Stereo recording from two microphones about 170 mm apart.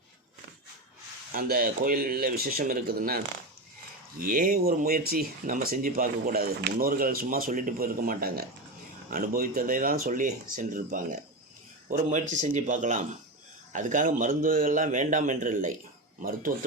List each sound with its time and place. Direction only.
1.3 s speech: 60° right (ahead or behind)
12.3 s a man's voice: 45° right (ahead or behind)